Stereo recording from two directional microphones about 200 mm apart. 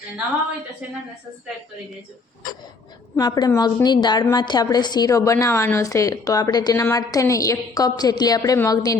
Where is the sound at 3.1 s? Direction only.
20° left (ahead or behind).